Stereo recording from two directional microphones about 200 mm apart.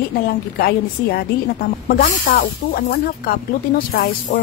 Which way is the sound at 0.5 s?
50° left (ahead or behind).